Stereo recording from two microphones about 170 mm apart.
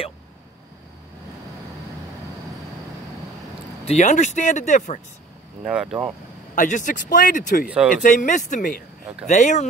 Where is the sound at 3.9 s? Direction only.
45° left (ahead or behind).